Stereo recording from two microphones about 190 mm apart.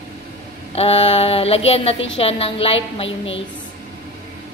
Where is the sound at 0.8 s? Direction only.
30° left (ahead or behind).